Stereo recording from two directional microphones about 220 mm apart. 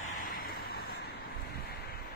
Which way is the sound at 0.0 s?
40° left (ahead or behind).